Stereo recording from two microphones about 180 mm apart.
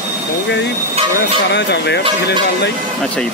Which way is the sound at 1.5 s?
70° left (ahead or behind).